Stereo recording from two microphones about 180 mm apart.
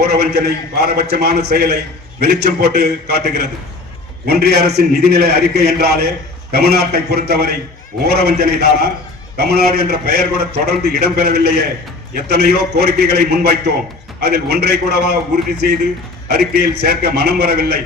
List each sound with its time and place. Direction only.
0.0 s a man's voice: 65° right (ahead or behind)